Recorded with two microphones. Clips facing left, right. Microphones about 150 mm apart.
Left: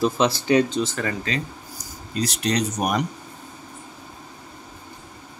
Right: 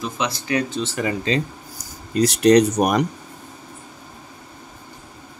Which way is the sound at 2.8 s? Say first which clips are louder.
Right 5 dB; 50° right (ahead or behind).